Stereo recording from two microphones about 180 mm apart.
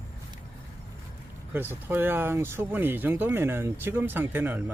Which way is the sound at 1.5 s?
10° right (ahead or behind).